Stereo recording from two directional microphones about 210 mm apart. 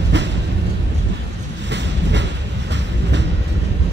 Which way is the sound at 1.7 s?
55° right (ahead or behind).